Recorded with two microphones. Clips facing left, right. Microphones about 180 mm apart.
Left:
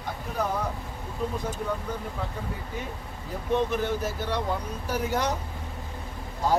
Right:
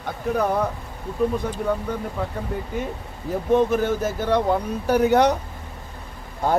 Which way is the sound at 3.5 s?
45° right (ahead or behind).